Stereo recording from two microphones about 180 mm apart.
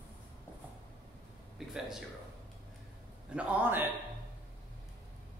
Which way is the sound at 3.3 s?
10° right (ahead or behind).